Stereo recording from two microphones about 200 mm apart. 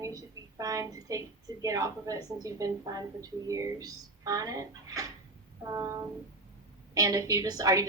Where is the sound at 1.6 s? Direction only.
15° right (ahead or behind).